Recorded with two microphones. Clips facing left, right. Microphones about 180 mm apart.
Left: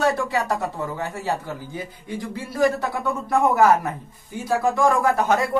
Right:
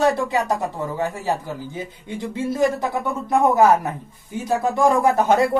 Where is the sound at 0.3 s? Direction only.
15° right (ahead or behind).